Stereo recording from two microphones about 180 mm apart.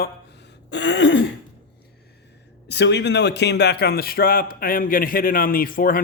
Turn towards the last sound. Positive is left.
turn(degrees=50)  # may be behind; listen again after turning